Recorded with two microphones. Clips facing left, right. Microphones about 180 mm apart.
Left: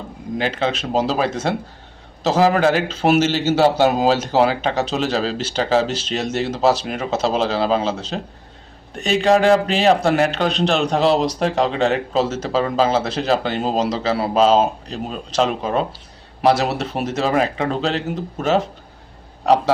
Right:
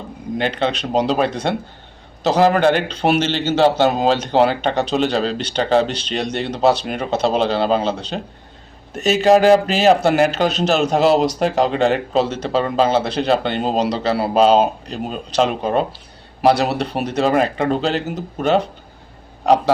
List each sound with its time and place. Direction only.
0.3 s a man's voice: centre (ahead or behind)